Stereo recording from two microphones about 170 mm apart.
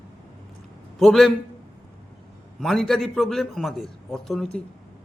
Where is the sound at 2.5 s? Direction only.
Centre (ahead or behind).